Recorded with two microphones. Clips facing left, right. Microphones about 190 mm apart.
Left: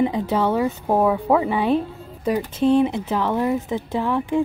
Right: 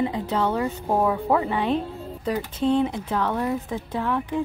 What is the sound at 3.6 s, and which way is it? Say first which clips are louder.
Speech: left 5 dB; 25° left (ahead or behind).